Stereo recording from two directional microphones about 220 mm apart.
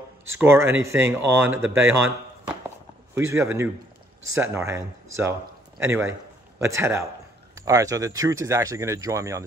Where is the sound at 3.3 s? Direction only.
10° right (ahead or behind).